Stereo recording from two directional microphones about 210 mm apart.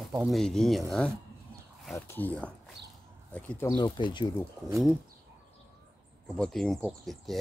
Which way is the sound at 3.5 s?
15° left (ahead or behind).